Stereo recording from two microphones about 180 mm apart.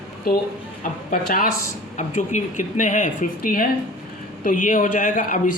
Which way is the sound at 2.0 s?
40° left (ahead or behind).